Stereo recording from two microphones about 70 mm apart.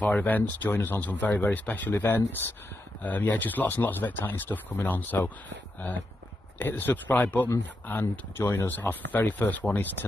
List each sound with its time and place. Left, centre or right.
0.0 s speech: left
6.6 s speech: left